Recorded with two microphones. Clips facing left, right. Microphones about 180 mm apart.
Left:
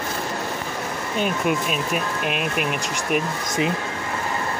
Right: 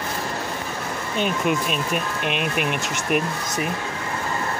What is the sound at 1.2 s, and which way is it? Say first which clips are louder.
Speech: even; centre (ahead or behind).